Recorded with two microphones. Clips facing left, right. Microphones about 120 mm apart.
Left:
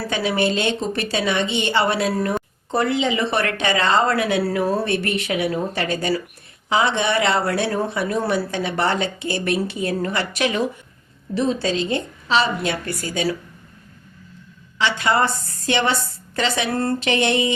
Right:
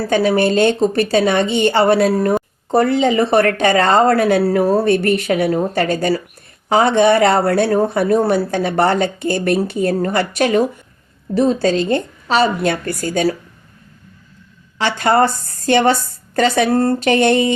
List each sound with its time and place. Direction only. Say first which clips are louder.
0.1 s speech: right 7 dB; 45° right (ahead or behind)
14.8 s speech: right 5 dB; 45° right (ahead or behind)